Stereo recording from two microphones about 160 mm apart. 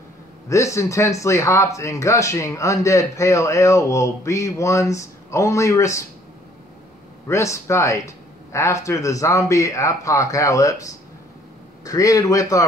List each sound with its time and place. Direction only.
0.5 s speech: 20° left (ahead or behind)
7.2 s a man's voice: 20° left (ahead or behind)